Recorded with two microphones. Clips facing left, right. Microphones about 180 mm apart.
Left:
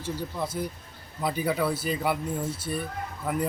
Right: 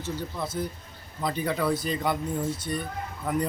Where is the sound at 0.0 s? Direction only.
10° left (ahead or behind).